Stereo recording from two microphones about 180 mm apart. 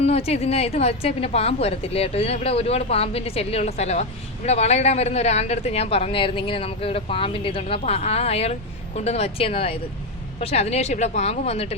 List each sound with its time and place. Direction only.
0.0 s speech: 35° left (ahead or behind)